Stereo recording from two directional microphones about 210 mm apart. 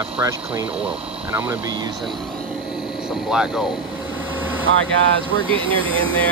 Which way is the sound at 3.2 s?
5° right (ahead or behind).